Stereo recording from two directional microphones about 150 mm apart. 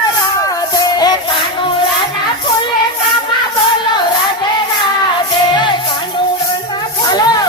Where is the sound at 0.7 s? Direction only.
25° left (ahead or behind).